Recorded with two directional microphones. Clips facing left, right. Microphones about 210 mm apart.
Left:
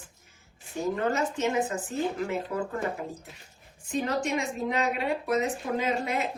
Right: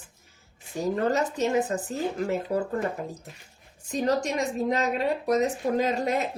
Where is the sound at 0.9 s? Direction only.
40° right (ahead or behind).